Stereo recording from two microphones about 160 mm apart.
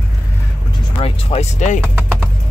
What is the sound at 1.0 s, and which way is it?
Music, 40° left (ahead or behind).